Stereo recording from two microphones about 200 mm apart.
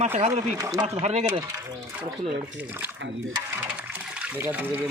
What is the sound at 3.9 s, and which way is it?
Trickle, 5° right (ahead or behind).